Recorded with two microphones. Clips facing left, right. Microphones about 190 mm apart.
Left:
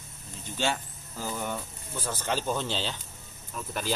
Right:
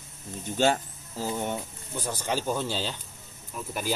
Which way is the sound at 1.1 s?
25° right (ahead or behind).